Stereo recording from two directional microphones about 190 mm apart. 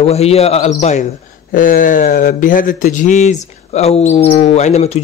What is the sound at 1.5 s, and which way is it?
Speech, 45° left (ahead or behind).